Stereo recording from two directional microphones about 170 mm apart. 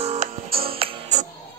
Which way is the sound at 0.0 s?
40° right (ahead or behind).